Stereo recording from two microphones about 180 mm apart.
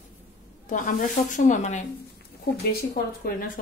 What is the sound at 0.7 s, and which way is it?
Speech, 45° left (ahead or behind).